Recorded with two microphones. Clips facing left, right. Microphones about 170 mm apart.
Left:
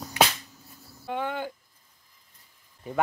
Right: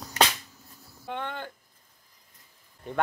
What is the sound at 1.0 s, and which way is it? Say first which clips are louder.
Speech: left 4 dB; 5° left (ahead or behind).